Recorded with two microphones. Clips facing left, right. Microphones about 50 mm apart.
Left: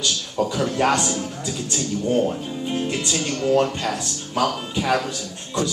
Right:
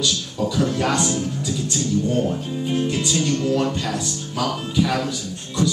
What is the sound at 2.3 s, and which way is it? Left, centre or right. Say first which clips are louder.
Speech: right 2 dB; centre.